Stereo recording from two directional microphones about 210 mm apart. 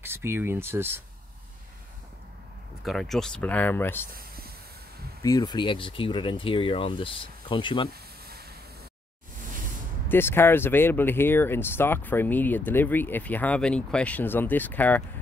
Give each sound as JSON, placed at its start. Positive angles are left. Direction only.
{"t": 0.0, "sound": "speech", "side_deg": -10}
{"t": 2.8, "sound": "speech", "side_deg": 0}
{"t": 4.1, "sound": "a sound", "side_deg": -45}
{"t": 5.2, "sound": "speech", "side_deg": 20}
{"t": 10.0, "sound": "speech", "side_deg": 10}